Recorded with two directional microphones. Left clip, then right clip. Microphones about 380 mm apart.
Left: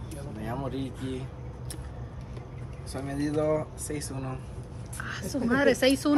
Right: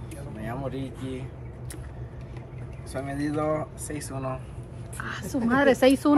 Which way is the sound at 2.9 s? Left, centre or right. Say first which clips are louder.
Right 1 dB; centre.